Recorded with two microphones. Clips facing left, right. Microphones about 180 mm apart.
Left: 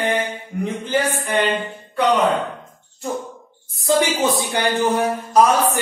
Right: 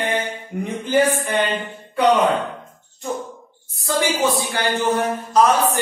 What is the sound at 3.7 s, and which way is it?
Speech, 15° left (ahead or behind).